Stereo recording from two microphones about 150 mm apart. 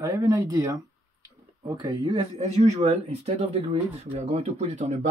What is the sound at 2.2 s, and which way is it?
Speech, 45° right (ahead or behind).